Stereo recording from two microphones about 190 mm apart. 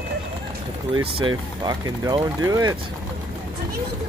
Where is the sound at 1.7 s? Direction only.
20° right (ahead or behind).